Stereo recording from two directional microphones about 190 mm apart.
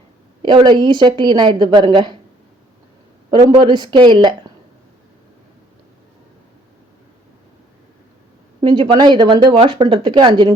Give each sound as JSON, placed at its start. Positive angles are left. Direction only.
{"t": 0.4, "sound": "speech", "side_deg": -25}
{"t": 3.2, "sound": "speech", "side_deg": -20}
{"t": 8.6, "sound": "speech", "side_deg": -25}